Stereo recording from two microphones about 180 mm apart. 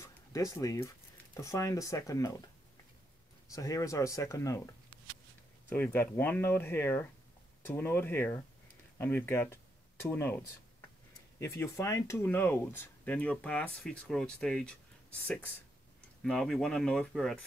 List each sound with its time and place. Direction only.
0.0 s speech: 20° left (ahead or behind)
3.5 s speech: 20° left (ahead or behind)
11.3 s speech: 15° left (ahead or behind)